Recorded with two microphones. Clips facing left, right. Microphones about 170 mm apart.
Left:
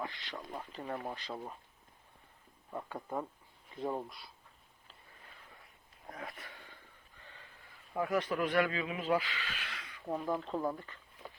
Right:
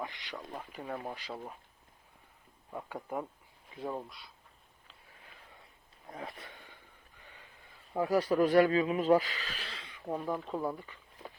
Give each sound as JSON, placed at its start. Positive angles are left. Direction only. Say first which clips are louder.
{"t": 0.0, "sound": "speech", "louder": "right 1 dB", "side_deg": -15}
{"t": 2.6, "sound": "speech", "louder": "right 1 dB", "side_deg": -5}
{"t": 6.1, "sound": "speech", "louder": "right 3 dB", "side_deg": -25}
{"t": 7.2, "sound": "a sound", "louder": "even", "side_deg": -15}
{"t": 7.9, "sound": "speech", "louder": "right 5 dB", "side_deg": -35}
{"t": 10.1, "sound": "speech", "louder": "even", "side_deg": -10}